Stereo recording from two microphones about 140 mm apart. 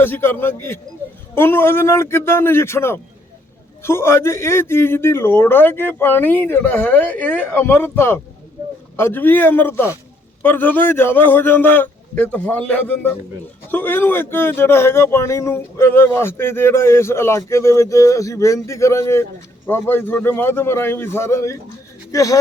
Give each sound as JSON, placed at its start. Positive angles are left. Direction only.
{"t": 0.0, "sound": "speech", "side_deg": 15}